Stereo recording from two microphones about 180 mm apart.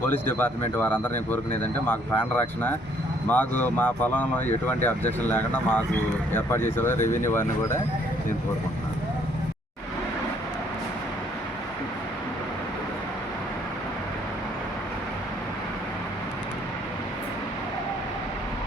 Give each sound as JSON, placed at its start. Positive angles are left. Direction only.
{"t": 0.0, "sound": "speech", "side_deg": 10}
{"t": 7.0, "sound": "speech", "side_deg": 45}
{"t": 7.3, "sound": "speech", "side_deg": 15}